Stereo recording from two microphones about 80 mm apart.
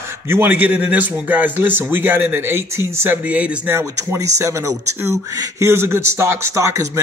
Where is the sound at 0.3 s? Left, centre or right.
Right.